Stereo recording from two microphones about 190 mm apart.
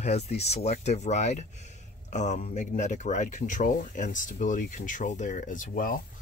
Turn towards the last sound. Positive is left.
turn(degrees=45)  # may be behind; listen again after turning